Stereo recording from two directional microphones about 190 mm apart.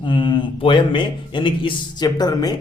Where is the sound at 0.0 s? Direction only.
25° left (ahead or behind).